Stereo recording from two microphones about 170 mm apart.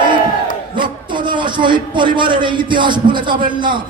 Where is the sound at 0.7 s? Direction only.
30° right (ahead or behind).